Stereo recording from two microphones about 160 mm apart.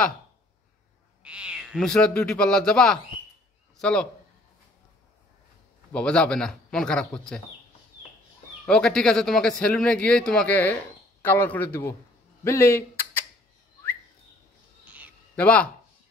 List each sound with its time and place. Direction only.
1.2 s speech: 5° right (ahead or behind)
5.9 s speech: 5° left (ahead or behind)
8.6 s speech: 5° left (ahead or behind)
12.4 s a sound: 15° left (ahead or behind)
15.3 s speech: 5° left (ahead or behind)